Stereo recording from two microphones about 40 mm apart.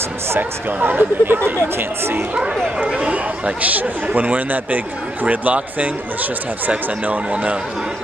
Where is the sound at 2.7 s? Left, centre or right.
Right.